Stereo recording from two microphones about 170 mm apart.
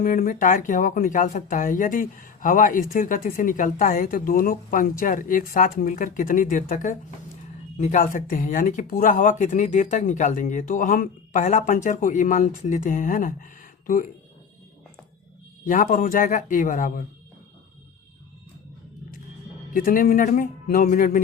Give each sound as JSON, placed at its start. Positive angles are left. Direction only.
{"t": 0.0, "sound": "speech", "side_deg": 55}
{"t": 15.6, "sound": "speech", "side_deg": 55}
{"t": 19.7, "sound": "speech", "side_deg": 55}